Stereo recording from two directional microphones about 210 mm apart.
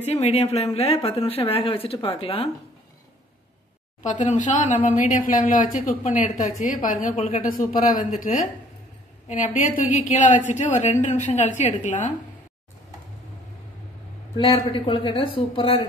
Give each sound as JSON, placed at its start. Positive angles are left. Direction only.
{"t": 0.0, "sound": "a woman's voice", "side_deg": 30}
{"t": 4.0, "sound": "a woman's voice", "side_deg": 35}
{"t": 14.3, "sound": "speech", "side_deg": 20}